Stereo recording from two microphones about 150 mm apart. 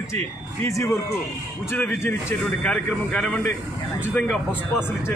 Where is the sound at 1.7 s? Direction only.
15° left (ahead or behind).